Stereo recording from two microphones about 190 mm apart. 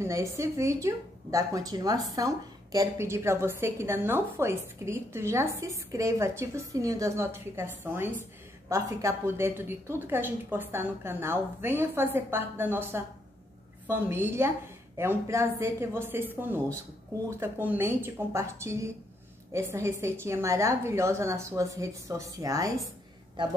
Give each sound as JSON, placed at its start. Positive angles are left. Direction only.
{"t": 0.0, "sound": "a woman's voice", "side_deg": -15}